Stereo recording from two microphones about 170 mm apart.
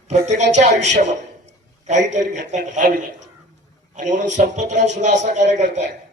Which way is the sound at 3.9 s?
45° right (ahead or behind).